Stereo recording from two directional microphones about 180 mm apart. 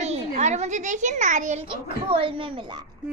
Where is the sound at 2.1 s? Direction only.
30° right (ahead or behind).